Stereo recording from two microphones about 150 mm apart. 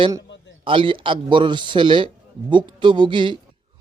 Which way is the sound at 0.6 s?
35° right (ahead or behind).